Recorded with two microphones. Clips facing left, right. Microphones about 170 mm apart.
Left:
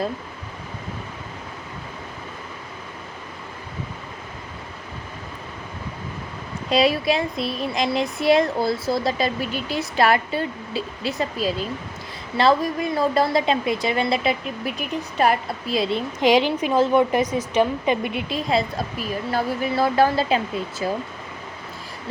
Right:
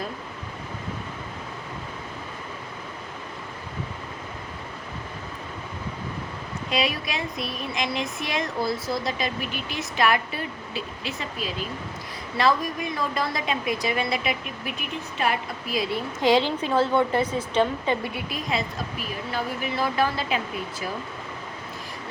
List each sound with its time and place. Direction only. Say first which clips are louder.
6.7 s a woman's voice: left 8 dB; 35° left (ahead or behind)
14.8 s speech: left 8 dB; 40° left (ahead or behind)
15.7 s a woman's voice: left 4 dB; 25° left (ahead or behind)